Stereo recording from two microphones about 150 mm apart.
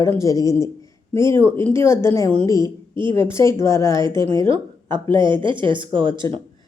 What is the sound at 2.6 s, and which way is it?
Speech, 35° right (ahead or behind).